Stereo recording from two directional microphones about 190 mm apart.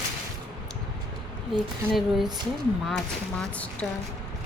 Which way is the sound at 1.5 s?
Centre (ahead or behind).